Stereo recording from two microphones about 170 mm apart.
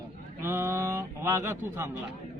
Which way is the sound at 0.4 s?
15° right (ahead or behind).